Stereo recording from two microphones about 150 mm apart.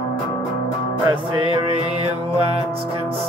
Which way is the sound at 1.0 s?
35° right (ahead or behind).